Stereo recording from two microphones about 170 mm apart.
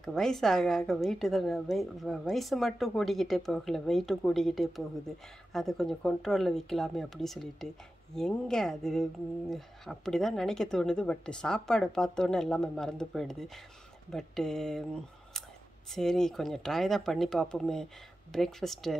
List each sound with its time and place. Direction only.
0.0 s a woman's voice: centre (ahead or behind)
15.9 s a woman's voice: 5° left (ahead or behind)